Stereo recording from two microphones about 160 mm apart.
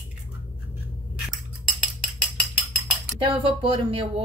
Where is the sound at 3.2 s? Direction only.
30° right (ahead or behind).